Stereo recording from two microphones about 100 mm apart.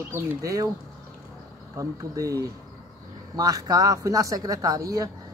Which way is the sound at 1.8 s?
35° right (ahead or behind).